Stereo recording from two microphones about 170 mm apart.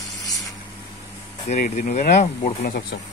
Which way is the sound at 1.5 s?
50° left (ahead or behind).